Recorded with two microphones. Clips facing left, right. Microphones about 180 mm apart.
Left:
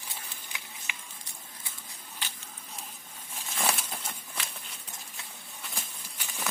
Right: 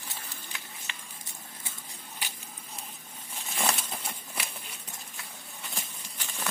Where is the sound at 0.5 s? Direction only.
15° left (ahead or behind).